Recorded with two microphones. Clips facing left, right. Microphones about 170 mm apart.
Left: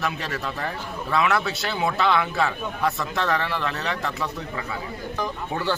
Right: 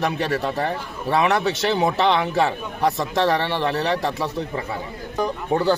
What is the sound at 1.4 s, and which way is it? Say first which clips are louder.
A man's voice: right 6 dB; 20° right (ahead or behind).